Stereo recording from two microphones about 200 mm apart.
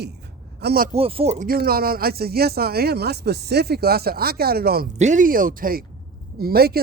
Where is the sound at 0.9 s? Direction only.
30° right (ahead or behind).